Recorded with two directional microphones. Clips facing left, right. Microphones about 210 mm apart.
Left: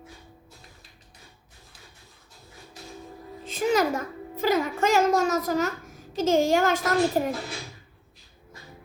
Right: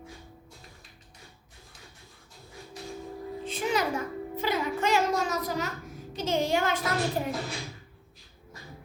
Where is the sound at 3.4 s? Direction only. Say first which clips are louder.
Left 6 dB; 45° left (ahead or behind).